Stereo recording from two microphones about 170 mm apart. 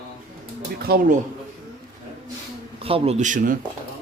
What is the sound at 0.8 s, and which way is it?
Speech, 60° right (ahead or behind).